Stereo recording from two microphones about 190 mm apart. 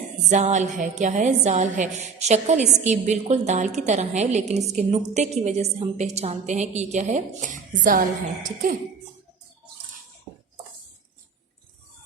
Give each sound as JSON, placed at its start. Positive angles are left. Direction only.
{"t": 0.3, "sound": "a woman's voice", "side_deg": -40}